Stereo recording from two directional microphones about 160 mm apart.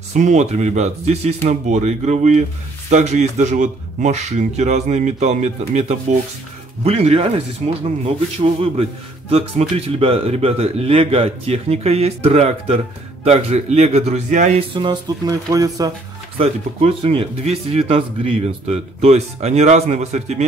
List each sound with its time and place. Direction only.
0.1 s a man's voice: 45° right (ahead or behind)
14.7 s speech: 30° right (ahead or behind)
16.3 s a man's voice: 40° right (ahead or behind)